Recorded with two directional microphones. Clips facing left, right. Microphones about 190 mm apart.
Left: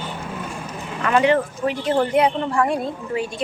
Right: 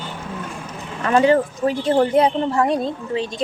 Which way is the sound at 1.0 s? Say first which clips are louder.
Right 2 dB; 35° right (ahead or behind).